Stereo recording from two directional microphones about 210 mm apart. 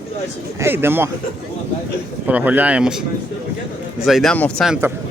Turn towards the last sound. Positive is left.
turn(degrees=-10)  # may be behind; listen again after turning